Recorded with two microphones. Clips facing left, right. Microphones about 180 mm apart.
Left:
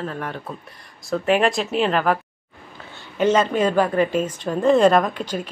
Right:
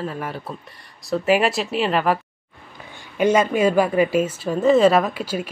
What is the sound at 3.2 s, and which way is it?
A woman's voice, 10° right (ahead or behind).